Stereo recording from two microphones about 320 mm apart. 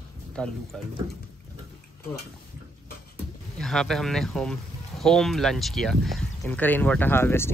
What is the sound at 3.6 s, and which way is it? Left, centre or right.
Speech, centre.